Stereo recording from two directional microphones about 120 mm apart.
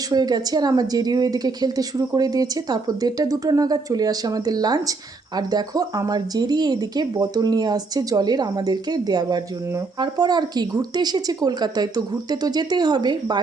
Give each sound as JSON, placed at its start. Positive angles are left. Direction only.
{"t": 0.1, "sound": "a woman's voice", "side_deg": -35}